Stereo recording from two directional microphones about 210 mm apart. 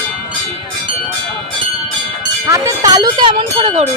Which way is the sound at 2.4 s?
15° right (ahead or behind).